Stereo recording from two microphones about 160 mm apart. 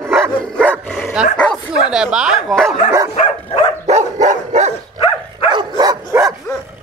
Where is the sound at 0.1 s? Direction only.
Centre (ahead or behind).